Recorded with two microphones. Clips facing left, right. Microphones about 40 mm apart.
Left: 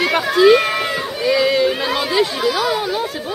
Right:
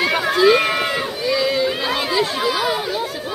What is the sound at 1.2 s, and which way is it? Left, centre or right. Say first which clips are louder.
Speech: left 5 dB; centre.